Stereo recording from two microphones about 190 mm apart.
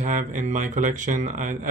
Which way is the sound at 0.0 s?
40° right (ahead or behind).